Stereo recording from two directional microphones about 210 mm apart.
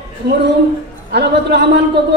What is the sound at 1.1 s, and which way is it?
Speech, 50° right (ahead or behind).